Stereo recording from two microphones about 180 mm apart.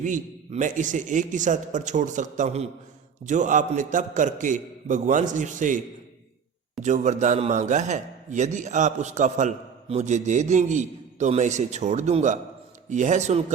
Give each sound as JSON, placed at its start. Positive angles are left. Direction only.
{"t": 0.0, "sound": "a man's voice", "side_deg": -45}